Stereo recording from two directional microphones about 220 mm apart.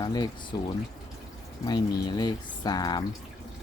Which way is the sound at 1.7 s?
20° left (ahead or behind).